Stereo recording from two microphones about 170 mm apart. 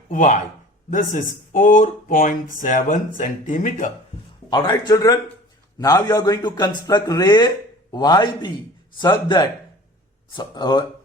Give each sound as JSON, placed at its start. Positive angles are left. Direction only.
{"t": 0.1, "sound": "speech", "side_deg": 45}
{"t": 4.4, "sound": "a man's voice", "side_deg": 25}